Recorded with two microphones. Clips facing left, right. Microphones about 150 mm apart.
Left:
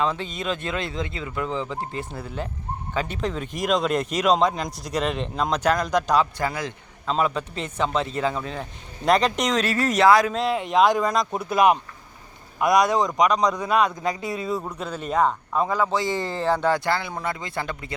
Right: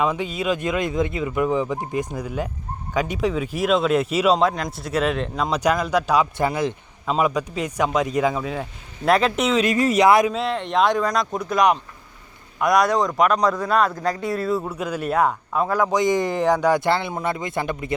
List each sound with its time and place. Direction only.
0.0 s a man's voice: 10° right (ahead or behind)
6.3 s a man's voice: 20° right (ahead or behind)
7.1 s a man's voice: 10° right (ahead or behind)
10.2 s speech: centre (ahead or behind)
13.1 s speech: 5° right (ahead or behind)
13.5 s a man's voice: 15° left (ahead or behind)
14.4 s a man's voice: centre (ahead or behind); by 17.9 s 20° right (ahead or behind)